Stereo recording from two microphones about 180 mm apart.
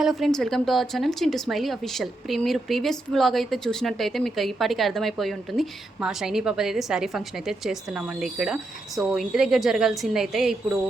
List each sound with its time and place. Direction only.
0.0 s a woman's voice: centre (ahead or behind)